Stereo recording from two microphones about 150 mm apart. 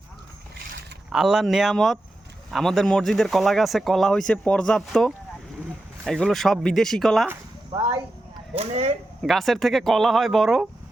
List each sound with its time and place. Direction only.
1.1 s speech: 5° right (ahead or behind)
7.7 s speech: 30° right (ahead or behind)
8.5 s speech: 45° right (ahead or behind)
9.2 s speech: centre (ahead or behind)